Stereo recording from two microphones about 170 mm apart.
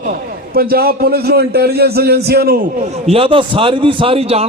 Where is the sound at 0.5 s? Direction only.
60° right (ahead or behind).